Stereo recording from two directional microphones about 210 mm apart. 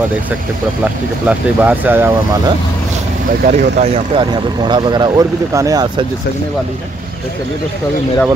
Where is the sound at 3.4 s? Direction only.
35° right (ahead or behind); by 6.0 s 20° right (ahead or behind).